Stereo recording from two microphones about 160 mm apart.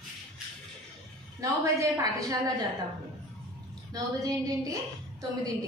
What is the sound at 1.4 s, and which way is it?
Speech, 20° right (ahead or behind).